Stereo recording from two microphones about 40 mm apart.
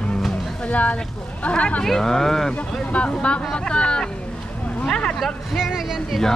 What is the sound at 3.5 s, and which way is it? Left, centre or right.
Speech, left.